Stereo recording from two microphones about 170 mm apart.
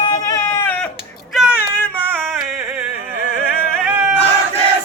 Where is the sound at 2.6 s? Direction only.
10° right (ahead or behind).